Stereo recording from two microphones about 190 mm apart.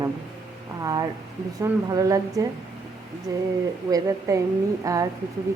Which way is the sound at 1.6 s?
20° right (ahead or behind).